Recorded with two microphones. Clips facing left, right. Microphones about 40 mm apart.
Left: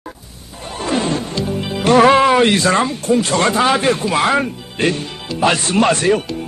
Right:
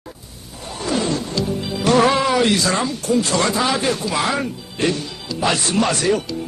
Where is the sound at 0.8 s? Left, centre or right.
Left.